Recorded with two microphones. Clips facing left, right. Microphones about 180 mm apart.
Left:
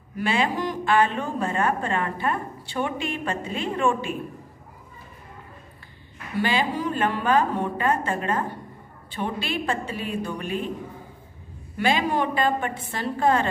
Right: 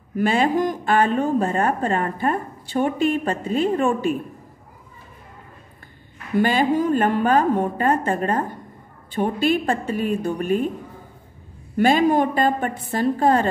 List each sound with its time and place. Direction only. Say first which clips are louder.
0.2 s speech: right 5 dB; 45° right (ahead or behind)
6.3 s speech: right 6 dB; 45° right (ahead or behind)
11.7 s speech: right 7 dB; 45° right (ahead or behind)